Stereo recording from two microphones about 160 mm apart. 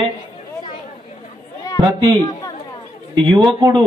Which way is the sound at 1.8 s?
30° right (ahead or behind).